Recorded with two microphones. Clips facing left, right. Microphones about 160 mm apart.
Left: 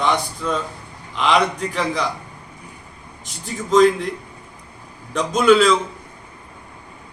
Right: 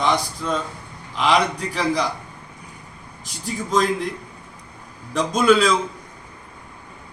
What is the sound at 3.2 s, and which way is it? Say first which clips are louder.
Speech: right 1 dB; centre (ahead or behind).